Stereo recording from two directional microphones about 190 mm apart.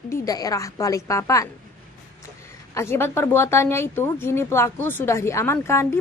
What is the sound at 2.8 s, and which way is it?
Speech, 15° left (ahead or behind).